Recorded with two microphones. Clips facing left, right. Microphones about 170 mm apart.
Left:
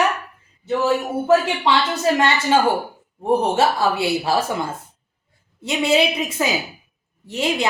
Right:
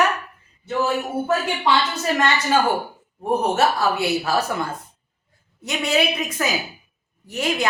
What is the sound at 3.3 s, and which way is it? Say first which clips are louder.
A woman's voice: left 2 dB; 30° left (ahead or behind).